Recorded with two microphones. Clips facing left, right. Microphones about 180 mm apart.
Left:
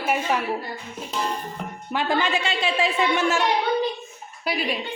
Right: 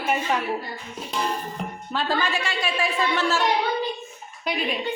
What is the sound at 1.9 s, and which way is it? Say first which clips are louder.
A woman's voice: left 2 dB; 15° left (ahead or behind).